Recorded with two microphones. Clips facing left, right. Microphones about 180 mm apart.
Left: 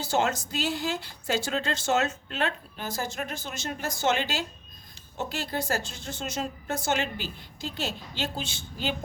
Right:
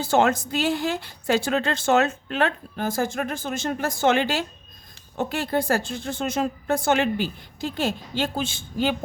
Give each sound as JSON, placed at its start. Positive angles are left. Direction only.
{"t": 0.0, "sound": "speech", "side_deg": -55}